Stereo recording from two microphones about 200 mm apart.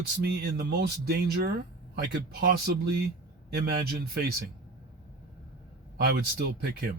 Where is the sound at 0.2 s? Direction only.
50° right (ahead or behind).